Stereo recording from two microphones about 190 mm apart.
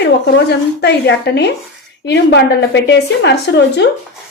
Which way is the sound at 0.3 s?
65° left (ahead or behind).